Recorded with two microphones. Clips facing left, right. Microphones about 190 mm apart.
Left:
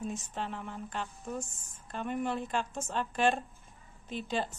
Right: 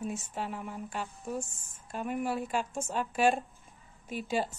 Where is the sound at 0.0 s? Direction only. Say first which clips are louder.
Right 1 dB; 10° right (ahead or behind).